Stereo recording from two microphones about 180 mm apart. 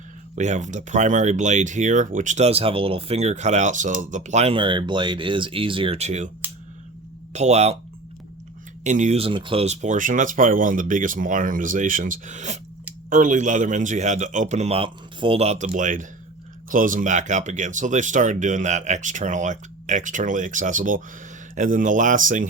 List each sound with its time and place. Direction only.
0.3 s speech: 40° right (ahead or behind)
7.3 s speech: 40° right (ahead or behind)
8.8 s speech: 40° right (ahead or behind)